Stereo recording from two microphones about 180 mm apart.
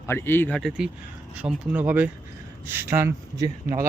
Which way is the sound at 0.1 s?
10° left (ahead or behind).